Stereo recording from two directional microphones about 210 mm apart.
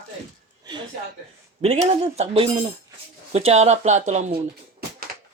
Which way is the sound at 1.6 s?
30° right (ahead or behind).